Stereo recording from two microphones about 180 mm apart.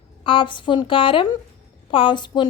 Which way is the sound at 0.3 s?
30° left (ahead or behind).